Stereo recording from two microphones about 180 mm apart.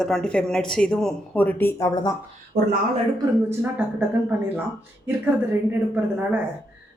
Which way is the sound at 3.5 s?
10° right (ahead or behind).